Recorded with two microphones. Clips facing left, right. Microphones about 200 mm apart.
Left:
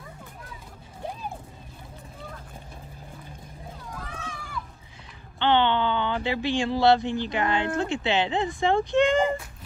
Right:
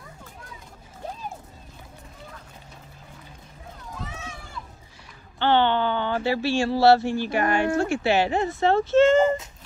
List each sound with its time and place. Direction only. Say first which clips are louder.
3.9 s run: right 2 dB; 5° right (ahead or behind)
5.4 s a sound: right 1 dB; 20° left (ahead or behind)
6.2 s speech: right 3 dB; 20° left (ahead or behind)